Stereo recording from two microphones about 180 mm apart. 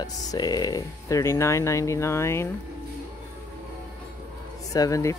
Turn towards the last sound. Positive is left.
turn(degrees=20)  # may be behind; listen again after turning